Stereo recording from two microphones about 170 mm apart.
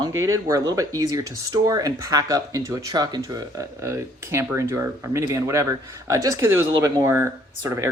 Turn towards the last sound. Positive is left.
turn(degrees=-15)  # may be behind; listen again after turning